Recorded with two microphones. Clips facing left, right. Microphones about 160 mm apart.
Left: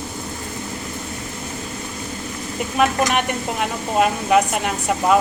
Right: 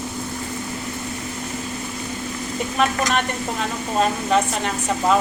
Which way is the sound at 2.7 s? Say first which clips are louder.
Left 3 dB; 10° left (ahead or behind).